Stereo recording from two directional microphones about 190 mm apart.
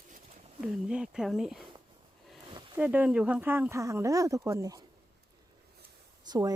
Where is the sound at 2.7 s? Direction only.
10° right (ahead or behind).